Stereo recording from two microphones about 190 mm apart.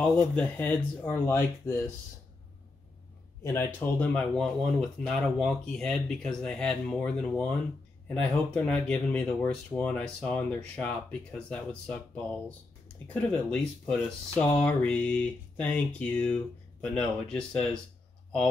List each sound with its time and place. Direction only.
0.0 s speech: 10° left (ahead or behind)
3.5 s speech: 10° left (ahead or behind)
13.0 s speech: 5° left (ahead or behind)